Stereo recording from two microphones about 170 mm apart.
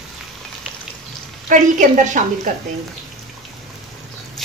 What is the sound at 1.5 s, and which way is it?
Speech, 50° right (ahead or behind).